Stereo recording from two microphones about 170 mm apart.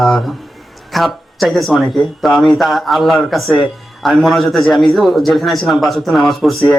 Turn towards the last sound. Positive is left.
turn(degrees=0)  # may be behind; listen again after turning